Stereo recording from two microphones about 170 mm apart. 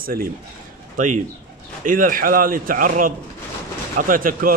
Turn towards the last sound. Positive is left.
turn(degrees=-55)  # may be behind; listen again after turning